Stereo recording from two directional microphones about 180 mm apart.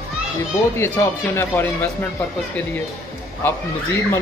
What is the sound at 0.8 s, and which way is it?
Speech, 15° left (ahead or behind).